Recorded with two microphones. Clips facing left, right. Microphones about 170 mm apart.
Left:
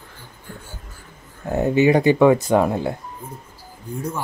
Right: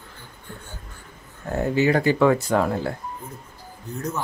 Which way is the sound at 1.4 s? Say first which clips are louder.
Left 4 dB; 20° left (ahead or behind).